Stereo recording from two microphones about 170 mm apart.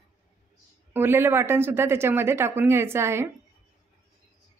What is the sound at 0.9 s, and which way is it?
A woman's voice, 15° right (ahead or behind).